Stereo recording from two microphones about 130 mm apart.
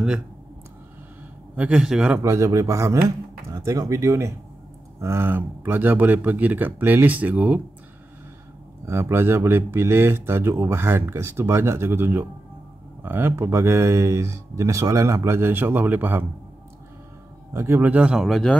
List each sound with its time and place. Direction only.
1.6 s speech: 5° right (ahead or behind)
2.2 s speech: 25° right (ahead or behind)
8.8 s speech: 20° right (ahead or behind)
17.5 s speech: 20° right (ahead or behind); by 18.6 s 5° left (ahead or behind)